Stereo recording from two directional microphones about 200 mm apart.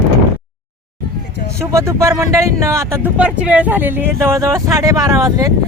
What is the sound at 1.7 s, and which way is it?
Speech, 15° right (ahead or behind).